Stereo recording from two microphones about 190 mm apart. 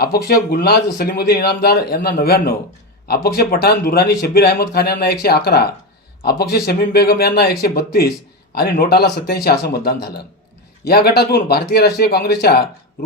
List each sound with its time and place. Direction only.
0.0 s a man's voice: 55° left (ahead or behind)